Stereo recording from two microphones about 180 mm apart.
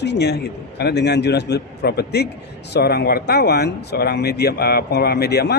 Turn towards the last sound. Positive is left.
turn(degrees=65)  # may be behind; listen again after turning